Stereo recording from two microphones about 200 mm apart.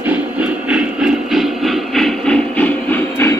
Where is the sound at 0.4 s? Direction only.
5° right (ahead or behind).